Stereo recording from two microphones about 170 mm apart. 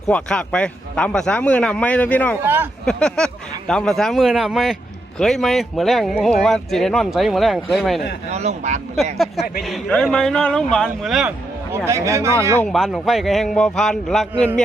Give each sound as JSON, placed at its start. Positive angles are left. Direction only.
{"t": 0.1, "sound": "a man's voice", "side_deg": 5}
{"t": 2.4, "sound": "speech", "side_deg": -10}
{"t": 2.8, "sound": "speech", "side_deg": 5}
{"t": 8.3, "sound": "speech", "side_deg": -40}
{"t": 9.1, "sound": "speech", "side_deg": 0}
{"t": 11.9, "sound": "speech", "side_deg": -15}
{"t": 12.6, "sound": "speech", "side_deg": 0}